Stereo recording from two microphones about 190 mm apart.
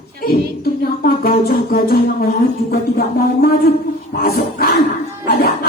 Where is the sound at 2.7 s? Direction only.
50° left (ahead or behind).